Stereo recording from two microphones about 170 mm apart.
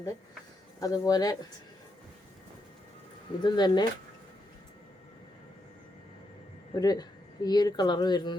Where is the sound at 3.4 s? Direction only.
25° left (ahead or behind).